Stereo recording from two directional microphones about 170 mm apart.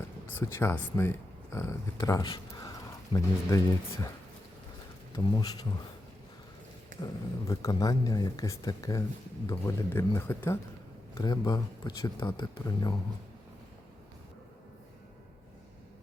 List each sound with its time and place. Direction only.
0.3 s speech: 15° left (ahead or behind)
5.1 s speech: 20° left (ahead or behind)
7.0 s speech: 20° left (ahead or behind)